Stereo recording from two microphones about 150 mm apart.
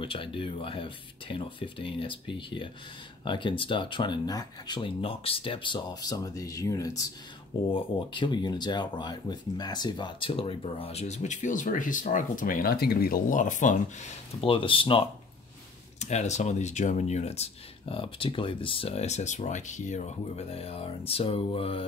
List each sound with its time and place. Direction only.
0.0 s speech: 35° left (ahead or behind); by 14.1 s 55° left (ahead or behind)
14.4 s speech: 35° left (ahead or behind)
16.0 s speech: 50° left (ahead or behind)